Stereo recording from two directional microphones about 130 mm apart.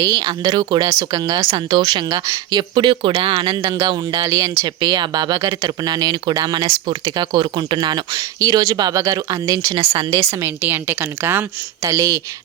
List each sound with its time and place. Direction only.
0.0 s a woman's voice: 35° right (ahead or behind)